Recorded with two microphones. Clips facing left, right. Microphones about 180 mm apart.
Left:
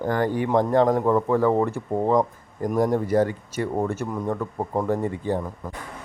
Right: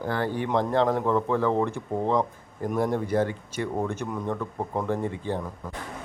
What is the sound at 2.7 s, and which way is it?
Speech, 45° left (ahead or behind).